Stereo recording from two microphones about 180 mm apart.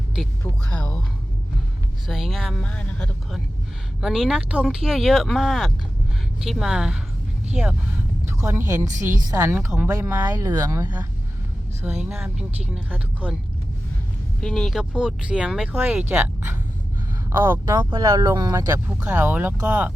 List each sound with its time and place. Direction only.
0.4 s speech: 5° left (ahead or behind)
2.0 s speech: centre (ahead or behind); by 11.0 s 15° right (ahead or behind)
12.0 s speech: 5° right (ahead or behind)
14.4 s speech: centre (ahead or behind)